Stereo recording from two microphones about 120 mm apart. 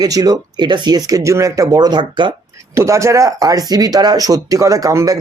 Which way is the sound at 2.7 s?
25° right (ahead or behind).